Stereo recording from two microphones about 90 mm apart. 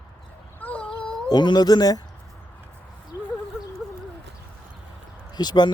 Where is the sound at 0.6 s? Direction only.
15° left (ahead or behind).